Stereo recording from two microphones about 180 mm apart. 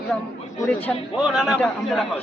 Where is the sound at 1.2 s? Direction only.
5° right (ahead or behind).